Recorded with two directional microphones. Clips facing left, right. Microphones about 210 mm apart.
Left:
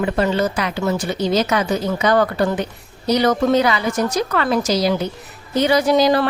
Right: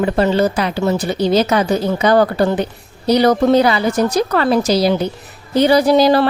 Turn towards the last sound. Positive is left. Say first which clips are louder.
# right 3 dB
turn(degrees=-30)  # may be behind; listen again after turning